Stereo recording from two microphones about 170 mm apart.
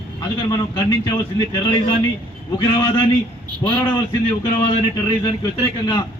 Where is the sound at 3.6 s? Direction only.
20° left (ahead or behind).